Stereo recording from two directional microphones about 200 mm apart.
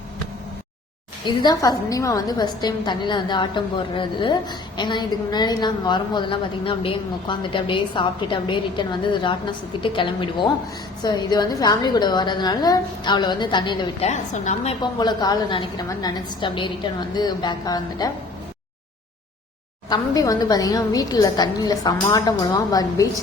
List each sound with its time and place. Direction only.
1.2 s a woman's voice: 25° left (ahead or behind)
14.1 s a woman's voice: 35° left (ahead or behind)
19.9 s a woman's voice: 20° left (ahead or behind)